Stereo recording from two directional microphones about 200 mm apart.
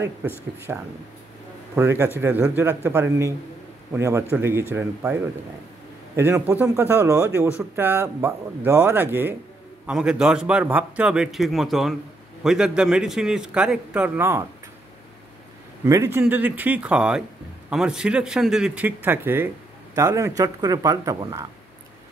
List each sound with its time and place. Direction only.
0.7 s a man's voice: 10° right (ahead or behind)
15.8 s a man's voice: 15° right (ahead or behind)